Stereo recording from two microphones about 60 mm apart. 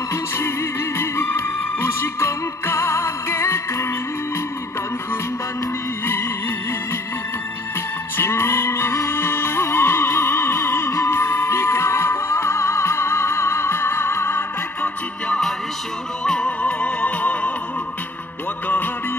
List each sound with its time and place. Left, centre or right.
0.9 s music: left
8.2 s music: left
16.3 s music: centre